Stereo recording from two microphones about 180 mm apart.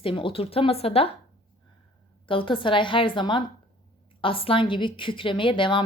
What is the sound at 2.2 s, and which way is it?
A woman's voice, 30° left (ahead or behind).